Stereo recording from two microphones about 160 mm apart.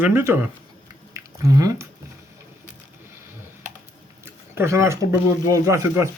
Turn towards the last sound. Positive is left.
turn(degrees=-20)  # may be behind; listen again after turning